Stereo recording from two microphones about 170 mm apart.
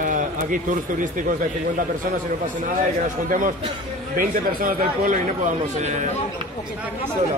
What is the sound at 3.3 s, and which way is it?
Speech, 50° right (ahead or behind).